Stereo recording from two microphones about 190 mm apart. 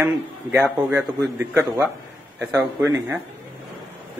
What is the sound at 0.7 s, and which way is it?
Speech, 5° right (ahead or behind).